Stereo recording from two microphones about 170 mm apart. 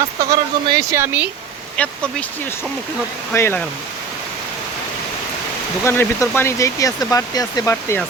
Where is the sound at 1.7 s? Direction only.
5° left (ahead or behind).